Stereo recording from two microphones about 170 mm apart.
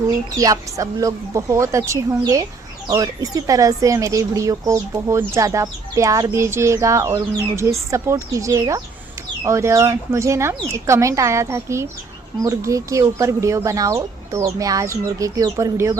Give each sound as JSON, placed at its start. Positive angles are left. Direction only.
{"t": 0.3, "sound": "speech", "side_deg": -20}